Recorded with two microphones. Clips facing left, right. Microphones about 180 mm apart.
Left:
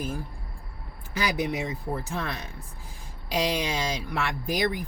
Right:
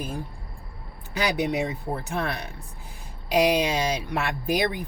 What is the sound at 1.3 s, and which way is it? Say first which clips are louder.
Speech: right 3 dB; 20° right (ahead or behind).